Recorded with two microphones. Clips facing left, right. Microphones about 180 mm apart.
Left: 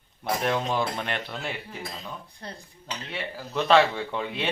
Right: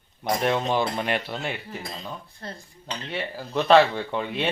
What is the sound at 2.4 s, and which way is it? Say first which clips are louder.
Speech: right 2 dB; 15° left (ahead or behind).